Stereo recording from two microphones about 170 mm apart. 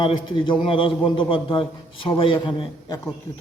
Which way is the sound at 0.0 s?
30° left (ahead or behind).